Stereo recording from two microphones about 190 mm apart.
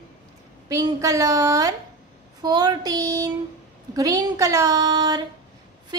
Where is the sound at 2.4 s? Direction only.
20° right (ahead or behind).